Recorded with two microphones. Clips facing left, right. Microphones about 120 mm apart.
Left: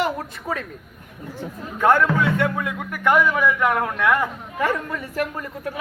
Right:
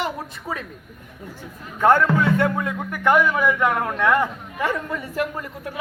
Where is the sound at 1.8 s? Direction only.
30° right (ahead or behind).